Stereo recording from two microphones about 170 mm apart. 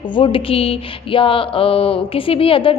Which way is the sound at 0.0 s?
30° left (ahead or behind).